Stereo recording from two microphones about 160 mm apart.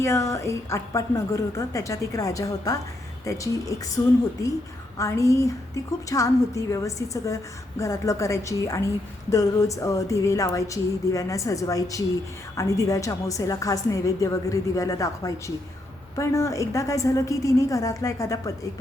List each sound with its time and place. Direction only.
0.0 s a woman's voice: 15° left (ahead or behind)
4.9 s a woman's voice: 20° left (ahead or behind)